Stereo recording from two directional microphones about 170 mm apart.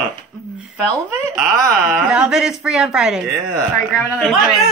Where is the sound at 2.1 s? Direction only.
5° right (ahead or behind).